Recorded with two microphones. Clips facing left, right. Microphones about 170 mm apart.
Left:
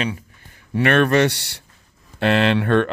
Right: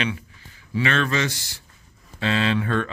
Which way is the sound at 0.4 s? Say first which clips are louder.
Left 5 dB; 55° left (ahead or behind).